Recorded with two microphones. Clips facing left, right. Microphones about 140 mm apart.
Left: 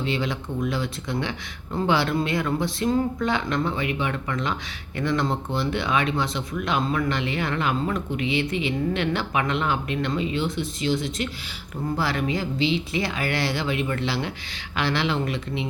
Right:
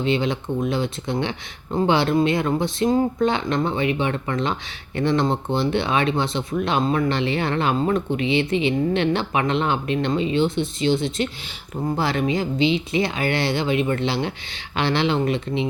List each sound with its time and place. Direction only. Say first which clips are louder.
0.0 s speech: right 5 dB; 25° right (ahead or behind)